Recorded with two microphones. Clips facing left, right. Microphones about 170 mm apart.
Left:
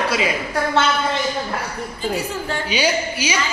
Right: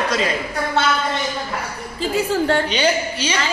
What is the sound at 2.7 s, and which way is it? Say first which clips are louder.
Speech: right 1 dB; 10° left (ahead or behind).